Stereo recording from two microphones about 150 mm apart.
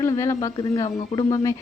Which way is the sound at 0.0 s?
20° left (ahead or behind).